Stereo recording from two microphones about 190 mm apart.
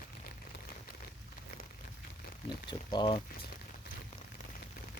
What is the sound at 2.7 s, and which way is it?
Speech, 25° left (ahead or behind).